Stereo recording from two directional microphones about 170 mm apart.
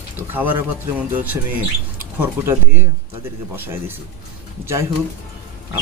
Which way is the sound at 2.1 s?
15° right (ahead or behind).